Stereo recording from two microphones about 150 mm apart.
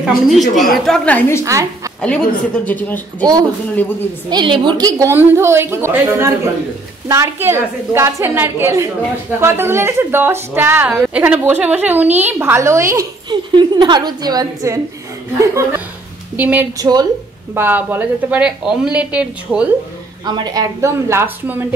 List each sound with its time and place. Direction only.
0.0 s a woman's voice: centre (ahead or behind)
1.4 s speech: 20° right (ahead or behind)
2.0 s a woman's voice: 5° left (ahead or behind)
4.3 s a woman's voice: 30° right (ahead or behind); by 16.6 s 10° right (ahead or behind)
16.7 s speech: 25° right (ahead or behind)
17.6 s a woman's voice: 15° right (ahead or behind)
20.2 s speech: 30° right (ahead or behind)